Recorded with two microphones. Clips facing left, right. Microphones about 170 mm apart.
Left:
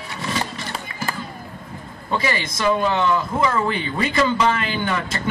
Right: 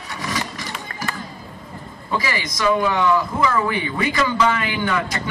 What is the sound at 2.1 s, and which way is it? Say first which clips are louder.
A man's voice: left 1 dB; 25° left (ahead or behind).